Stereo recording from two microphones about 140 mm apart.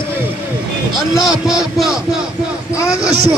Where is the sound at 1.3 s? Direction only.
5° right (ahead or behind).